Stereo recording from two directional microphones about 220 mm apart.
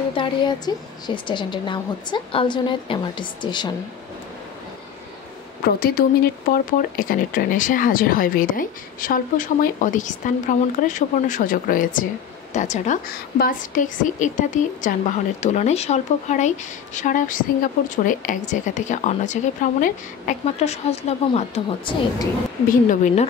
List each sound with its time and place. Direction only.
0.1 s a woman's voice: 20° left (ahead or behind)
5.6 s a woman's voice: 45° left (ahead or behind); by 22.3 s 25° left (ahead or behind)
22.7 s speech: 35° left (ahead or behind)